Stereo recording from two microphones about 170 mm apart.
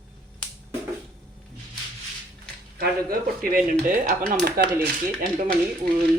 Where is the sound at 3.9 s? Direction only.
55° right (ahead or behind).